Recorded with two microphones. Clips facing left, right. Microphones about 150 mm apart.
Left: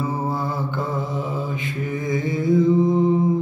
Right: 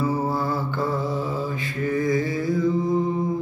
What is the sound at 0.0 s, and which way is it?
Mantra, 20° left (ahead or behind).